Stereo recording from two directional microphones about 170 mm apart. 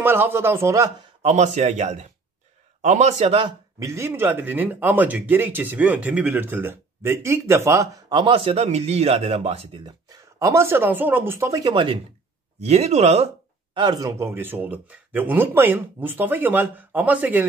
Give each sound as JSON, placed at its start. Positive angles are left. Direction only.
{"t": 0.0, "sound": "speech", "side_deg": -15}
{"t": 1.2, "sound": "speech", "side_deg": -40}
{"t": 3.8, "sound": "speech", "side_deg": -15}
{"t": 10.0, "sound": "speech", "side_deg": -20}
{"t": 13.7, "sound": "speech", "side_deg": -25}